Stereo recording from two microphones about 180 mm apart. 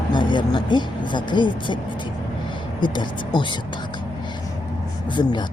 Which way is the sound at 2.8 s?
25° left (ahead or behind).